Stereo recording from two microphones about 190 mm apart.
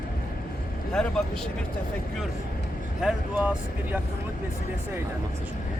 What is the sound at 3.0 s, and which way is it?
Speech, 5° right (ahead or behind).